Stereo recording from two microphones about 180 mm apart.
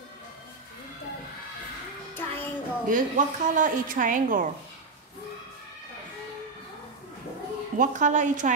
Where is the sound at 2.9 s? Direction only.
45° right (ahead or behind).